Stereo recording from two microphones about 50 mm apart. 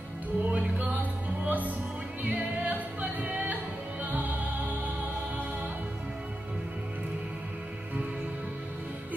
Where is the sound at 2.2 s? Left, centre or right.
Right.